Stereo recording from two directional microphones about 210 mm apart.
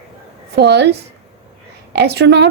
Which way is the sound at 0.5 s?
55° right (ahead or behind).